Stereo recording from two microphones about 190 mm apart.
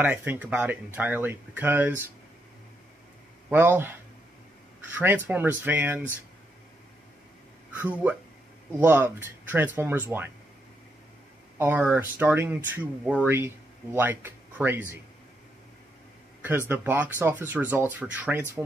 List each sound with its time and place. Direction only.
0.0 s speech: 10° right (ahead or behind)
3.4 s speech: 10° right (ahead or behind)
4.9 s speech: 10° right (ahead or behind)
7.7 s speech: 5° right (ahead or behind)
11.5 s a sound: 10° right (ahead or behind)
11.9 s speech: 10° right (ahead or behind)
16.4 s speech: 10° right (ahead or behind)